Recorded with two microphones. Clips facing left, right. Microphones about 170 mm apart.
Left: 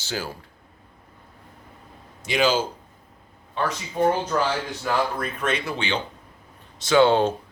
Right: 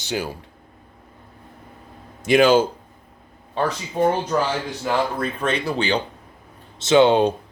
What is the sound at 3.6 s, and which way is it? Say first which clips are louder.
Speech: right 4 dB; 35° right (ahead or behind).